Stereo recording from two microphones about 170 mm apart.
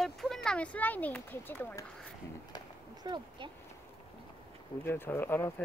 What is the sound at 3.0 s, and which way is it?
Speech, 25° right (ahead or behind).